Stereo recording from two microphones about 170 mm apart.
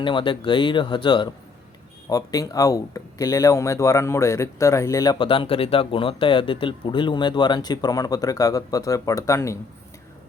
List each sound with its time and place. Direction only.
0.0 s speech: 30° left (ahead or behind)